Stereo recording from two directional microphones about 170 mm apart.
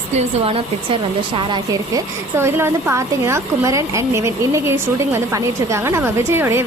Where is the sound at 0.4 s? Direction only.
35° right (ahead or behind).